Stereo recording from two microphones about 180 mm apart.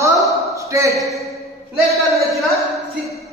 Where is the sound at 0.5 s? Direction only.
15° right (ahead or behind).